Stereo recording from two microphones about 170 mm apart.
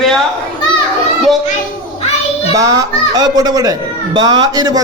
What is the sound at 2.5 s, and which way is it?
Speech, 20° right (ahead or behind).